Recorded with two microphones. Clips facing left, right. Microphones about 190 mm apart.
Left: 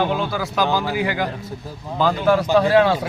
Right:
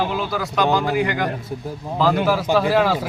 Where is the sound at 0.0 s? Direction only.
5° right (ahead or behind).